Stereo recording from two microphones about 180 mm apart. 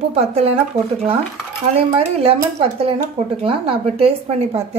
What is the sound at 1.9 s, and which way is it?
Speech, 30° right (ahead or behind).